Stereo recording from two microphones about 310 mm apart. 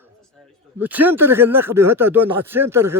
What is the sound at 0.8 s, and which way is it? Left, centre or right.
Speech, centre.